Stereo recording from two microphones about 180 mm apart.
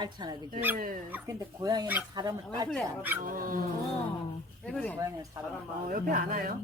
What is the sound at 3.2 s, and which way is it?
Speech, 50° right (ahead or behind).